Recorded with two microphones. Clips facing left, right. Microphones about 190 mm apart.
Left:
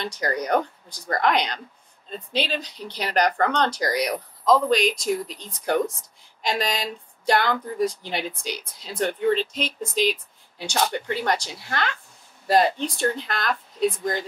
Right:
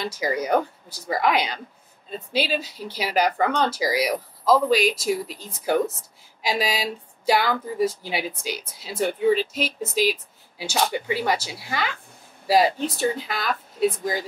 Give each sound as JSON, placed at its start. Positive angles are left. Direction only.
{"t": 0.0, "sound": "speech", "side_deg": -5}